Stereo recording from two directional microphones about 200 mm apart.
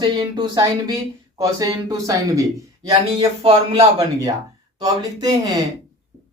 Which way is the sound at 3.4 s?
30° right (ahead or behind).